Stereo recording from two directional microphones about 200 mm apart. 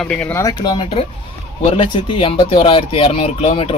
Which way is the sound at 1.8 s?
25° left (ahead or behind).